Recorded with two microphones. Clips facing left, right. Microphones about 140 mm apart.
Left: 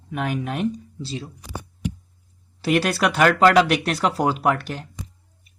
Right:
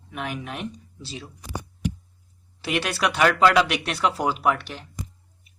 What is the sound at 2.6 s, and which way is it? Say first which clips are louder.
Speech: left 5 dB; 40° left (ahead or behind).